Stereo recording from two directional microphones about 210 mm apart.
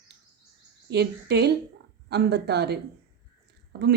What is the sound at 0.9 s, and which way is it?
A woman's voice, 50° right (ahead or behind).